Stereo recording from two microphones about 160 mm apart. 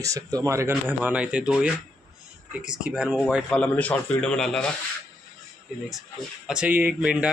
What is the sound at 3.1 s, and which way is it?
Speech, 5° left (ahead or behind).